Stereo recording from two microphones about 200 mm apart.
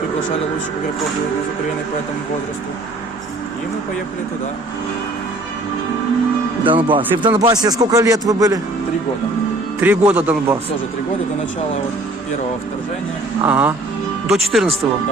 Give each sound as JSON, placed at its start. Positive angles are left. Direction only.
{"t": 6.7, "sound": "a man's voice", "side_deg": -25}
{"t": 9.8, "sound": "a man's voice", "side_deg": -10}
{"t": 13.4, "sound": "a man's voice", "side_deg": -10}